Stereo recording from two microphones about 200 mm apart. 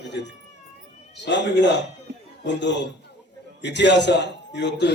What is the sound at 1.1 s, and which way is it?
A man's voice, 60° left (ahead or behind).